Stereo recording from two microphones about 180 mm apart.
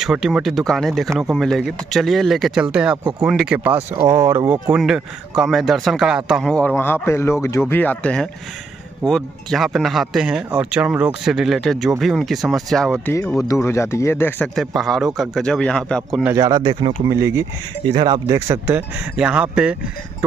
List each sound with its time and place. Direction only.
0.0 s speech: centre (ahead or behind)
14.5 s speech: centre (ahead or behind)
16.3 s speech: 25° right (ahead or behind); by 20.2 s 5° right (ahead or behind)